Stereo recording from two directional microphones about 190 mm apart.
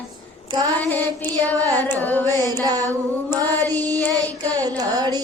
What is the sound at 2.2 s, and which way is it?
Music, 20° right (ahead or behind).